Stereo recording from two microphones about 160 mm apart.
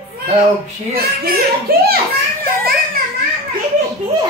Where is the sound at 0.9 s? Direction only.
70° right (ahead or behind).